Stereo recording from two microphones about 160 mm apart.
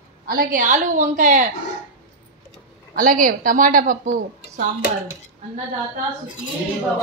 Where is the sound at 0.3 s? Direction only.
60° right (ahead or behind).